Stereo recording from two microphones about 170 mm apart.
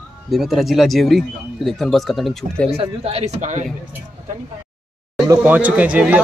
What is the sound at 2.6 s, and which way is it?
Speech, 35° right (ahead or behind).